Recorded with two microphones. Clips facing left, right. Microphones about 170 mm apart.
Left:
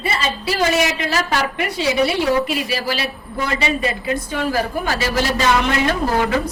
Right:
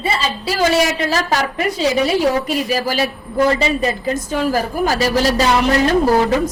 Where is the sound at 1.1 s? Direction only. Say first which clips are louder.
Right 2 dB; 40° right (ahead or behind).